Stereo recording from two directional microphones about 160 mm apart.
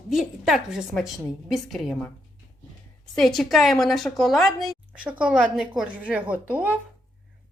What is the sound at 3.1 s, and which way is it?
A woman's voice, centre (ahead or behind).